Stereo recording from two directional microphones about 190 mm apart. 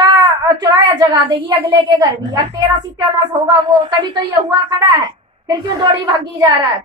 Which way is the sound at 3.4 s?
20° right (ahead or behind).